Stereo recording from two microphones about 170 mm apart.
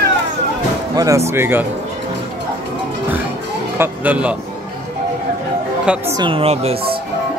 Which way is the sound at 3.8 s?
10° right (ahead or behind).